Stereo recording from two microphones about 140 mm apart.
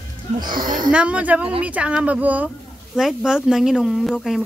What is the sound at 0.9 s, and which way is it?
Speech, 10° right (ahead or behind).